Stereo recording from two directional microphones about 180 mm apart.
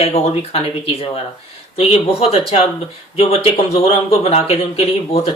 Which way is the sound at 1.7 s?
35° left (ahead or behind).